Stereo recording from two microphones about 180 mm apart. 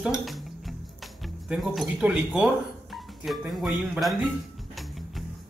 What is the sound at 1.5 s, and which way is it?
Speech, centre (ahead or behind).